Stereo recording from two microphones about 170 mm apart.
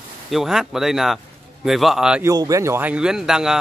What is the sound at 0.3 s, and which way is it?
A man's voice, centre (ahead or behind).